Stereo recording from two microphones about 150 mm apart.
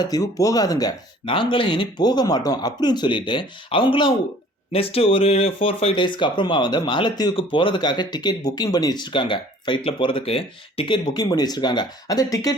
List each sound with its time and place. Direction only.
0.0 s speech: 25° left (ahead or behind)